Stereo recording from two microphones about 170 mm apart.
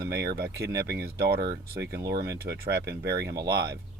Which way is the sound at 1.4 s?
25° right (ahead or behind).